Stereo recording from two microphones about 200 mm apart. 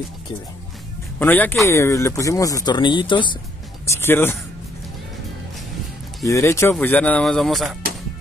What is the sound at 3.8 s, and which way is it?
Speech, 10° left (ahead or behind).